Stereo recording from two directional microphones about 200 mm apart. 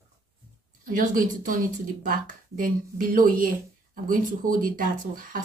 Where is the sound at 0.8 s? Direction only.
40° right (ahead or behind).